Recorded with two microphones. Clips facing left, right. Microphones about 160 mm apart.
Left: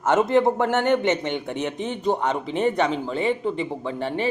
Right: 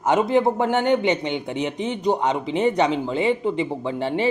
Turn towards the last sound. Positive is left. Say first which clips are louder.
# right 3 dB
turn(degrees=-20)  # may be behind; listen again after turning